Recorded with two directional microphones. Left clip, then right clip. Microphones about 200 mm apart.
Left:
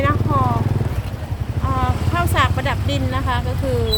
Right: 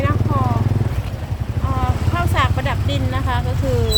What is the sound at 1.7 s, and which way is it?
Vehicle, 25° left (ahead or behind).